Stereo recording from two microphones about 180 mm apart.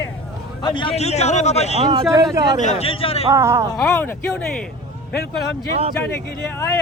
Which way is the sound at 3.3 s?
15° right (ahead or behind).